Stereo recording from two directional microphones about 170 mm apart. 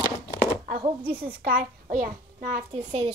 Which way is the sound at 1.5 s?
55° right (ahead or behind).